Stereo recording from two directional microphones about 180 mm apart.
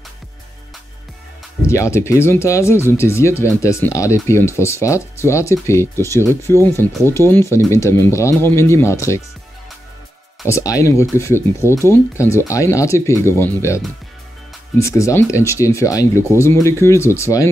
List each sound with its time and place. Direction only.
1.7 s speech: 15° left (ahead or behind)
10.4 s speech: 15° left (ahead or behind)
14.8 s speech: 15° left (ahead or behind)